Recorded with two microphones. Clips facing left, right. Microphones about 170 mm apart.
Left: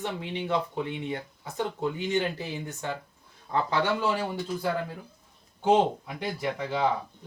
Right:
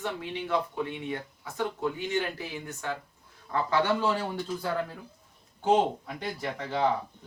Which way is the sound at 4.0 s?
10° left (ahead or behind).